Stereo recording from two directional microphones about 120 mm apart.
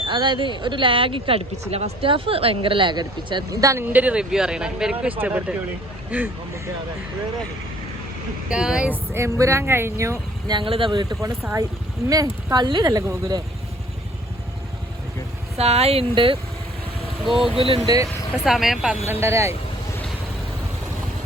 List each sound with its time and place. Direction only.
0.1 s speech: 40° right (ahead or behind)
3.6 s speech: 25° right (ahead or behind)
3.8 s speech: 10° right (ahead or behind)
8.4 s speech: 5° right (ahead or behind)
9.1 s speech: 25° right (ahead or behind)
10.5 s speech: 45° right (ahead or behind)
12.0 s speech: 30° right (ahead or behind)
15.5 s speech: 60° right (ahead or behind)
17.2 s speech: 5° right (ahead or behind)
17.8 s speech: 30° right (ahead or behind)
18.4 s speech: centre (ahead or behind)
19.0 s speech: 20° right (ahead or behind)